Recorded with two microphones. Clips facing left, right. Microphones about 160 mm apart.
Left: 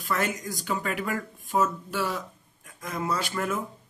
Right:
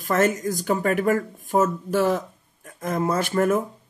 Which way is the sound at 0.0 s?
45° right (ahead or behind).